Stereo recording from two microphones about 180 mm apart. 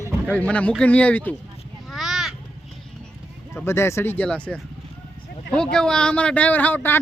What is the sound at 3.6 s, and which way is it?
Speech, 15° left (ahead or behind).